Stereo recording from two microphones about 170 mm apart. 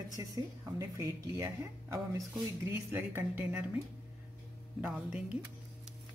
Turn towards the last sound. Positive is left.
turn(degrees=-5)  # may be behind; listen again after turning